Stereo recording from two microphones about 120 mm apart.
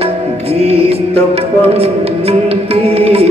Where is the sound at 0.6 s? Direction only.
55° right (ahead or behind).